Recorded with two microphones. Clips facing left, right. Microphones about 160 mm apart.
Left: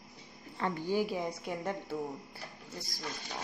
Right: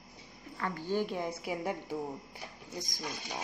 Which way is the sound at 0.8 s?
5° left (ahead or behind).